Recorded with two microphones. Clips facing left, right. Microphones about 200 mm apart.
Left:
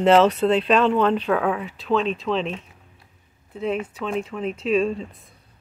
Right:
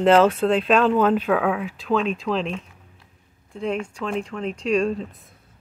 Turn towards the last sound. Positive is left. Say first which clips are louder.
# even
turn(degrees=0)  # may be behind; listen again after turning